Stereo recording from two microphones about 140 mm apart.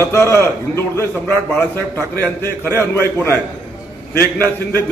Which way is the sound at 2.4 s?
15° left (ahead or behind).